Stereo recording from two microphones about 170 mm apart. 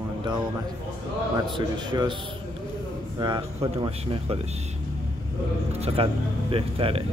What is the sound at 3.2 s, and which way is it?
Speech, 25° right (ahead or behind).